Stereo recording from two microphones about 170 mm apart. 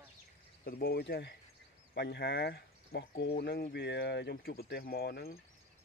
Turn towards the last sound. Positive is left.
turn(degrees=70)  # may be behind; listen again after turning